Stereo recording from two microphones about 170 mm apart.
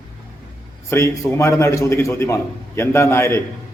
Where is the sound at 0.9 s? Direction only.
15° left (ahead or behind).